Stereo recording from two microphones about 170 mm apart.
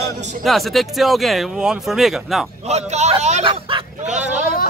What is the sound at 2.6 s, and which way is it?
Speech, 40° right (ahead or behind).